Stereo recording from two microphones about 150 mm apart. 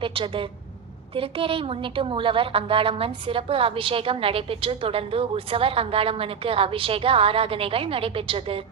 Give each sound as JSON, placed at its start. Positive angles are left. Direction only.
{"t": 0.0, "sound": "a woman's voice", "side_deg": -35}